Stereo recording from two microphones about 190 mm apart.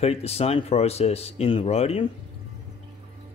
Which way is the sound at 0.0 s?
35° left (ahead or behind).